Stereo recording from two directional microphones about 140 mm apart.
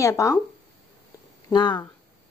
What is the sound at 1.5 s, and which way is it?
Speech, 30° left (ahead or behind).